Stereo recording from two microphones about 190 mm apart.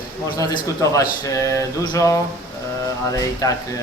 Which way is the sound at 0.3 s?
15° left (ahead or behind).